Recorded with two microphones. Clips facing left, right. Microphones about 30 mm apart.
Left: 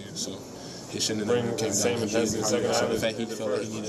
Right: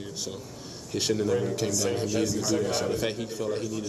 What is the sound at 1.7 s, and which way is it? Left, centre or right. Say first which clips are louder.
Speech: left 2 dB; left.